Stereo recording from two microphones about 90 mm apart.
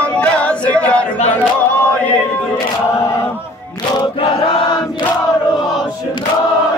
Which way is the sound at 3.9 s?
90° left.